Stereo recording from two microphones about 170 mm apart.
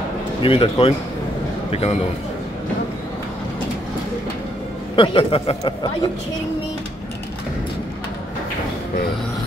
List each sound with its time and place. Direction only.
0.4 s a man's voice: 35° left (ahead or behind)
4.9 s a man's voice: 30° left (ahead or behind)